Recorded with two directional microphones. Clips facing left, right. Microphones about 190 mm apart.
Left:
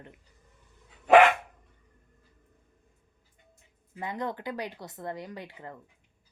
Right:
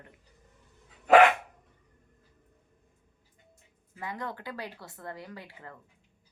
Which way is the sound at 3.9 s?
20° left (ahead or behind).